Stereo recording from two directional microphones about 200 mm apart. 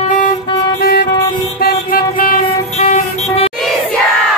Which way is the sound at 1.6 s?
50° left (ahead or behind).